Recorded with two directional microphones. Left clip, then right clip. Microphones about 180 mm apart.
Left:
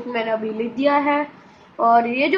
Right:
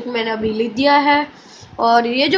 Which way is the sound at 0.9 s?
60° right (ahead or behind).